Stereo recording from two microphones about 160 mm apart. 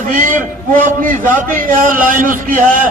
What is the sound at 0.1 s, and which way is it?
A man's voice, 55° right (ahead or behind).